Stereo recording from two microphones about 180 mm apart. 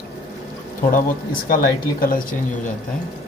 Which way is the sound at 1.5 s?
55° left (ahead or behind).